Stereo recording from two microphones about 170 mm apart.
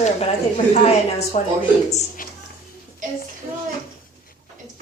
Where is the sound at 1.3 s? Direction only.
45° left (ahead or behind).